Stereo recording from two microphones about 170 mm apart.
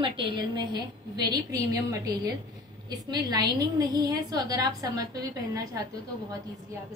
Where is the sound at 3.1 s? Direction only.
25° right (ahead or behind).